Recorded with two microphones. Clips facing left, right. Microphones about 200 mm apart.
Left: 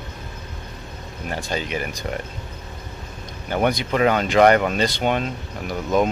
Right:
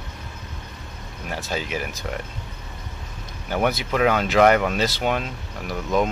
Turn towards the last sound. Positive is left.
turn(degrees=0)  # may be behind; listen again after turning